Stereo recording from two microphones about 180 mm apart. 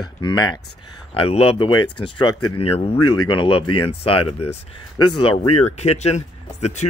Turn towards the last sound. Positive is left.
turn(degrees=40)  # may be behind; listen again after turning